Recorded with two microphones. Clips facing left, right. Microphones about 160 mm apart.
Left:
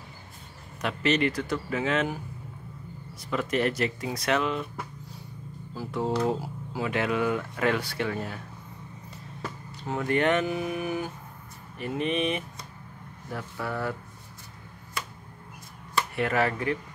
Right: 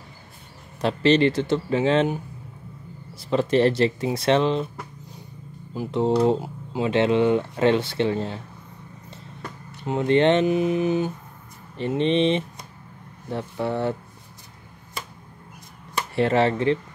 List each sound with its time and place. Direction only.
0.7 s speech: 30° right (ahead or behind)
3.2 s speech: 30° right (ahead or behind)
5.8 s speech: 20° right (ahead or behind)
9.8 s speech: 25° right (ahead or behind)
15.9 s speech: 25° right (ahead or behind)